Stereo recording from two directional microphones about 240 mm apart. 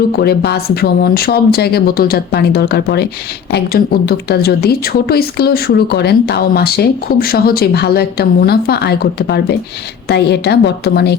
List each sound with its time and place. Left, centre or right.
0.2 s a woman's voice: left